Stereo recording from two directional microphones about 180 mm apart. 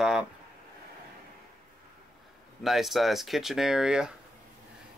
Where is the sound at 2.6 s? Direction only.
Centre (ahead or behind).